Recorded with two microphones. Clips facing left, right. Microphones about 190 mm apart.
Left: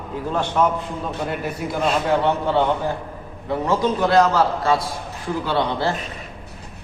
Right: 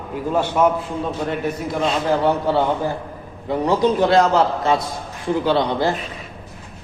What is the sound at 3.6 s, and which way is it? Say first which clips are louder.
A man's voice: right 3 dB; 30° right (ahead or behind).